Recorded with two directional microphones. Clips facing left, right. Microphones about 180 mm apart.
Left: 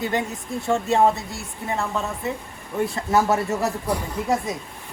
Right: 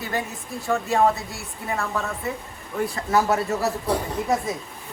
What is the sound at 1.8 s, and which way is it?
Speech, 15° left (ahead or behind).